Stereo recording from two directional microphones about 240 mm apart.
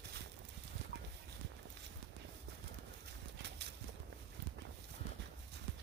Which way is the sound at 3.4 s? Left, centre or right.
Right.